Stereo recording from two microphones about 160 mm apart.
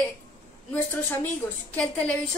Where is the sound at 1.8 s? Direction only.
10° left (ahead or behind).